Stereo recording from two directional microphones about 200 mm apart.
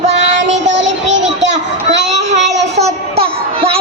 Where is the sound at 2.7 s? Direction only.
30° right (ahead or behind).